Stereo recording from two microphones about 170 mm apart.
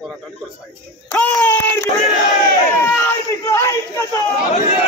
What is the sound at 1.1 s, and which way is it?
Speech, 10° left (ahead or behind).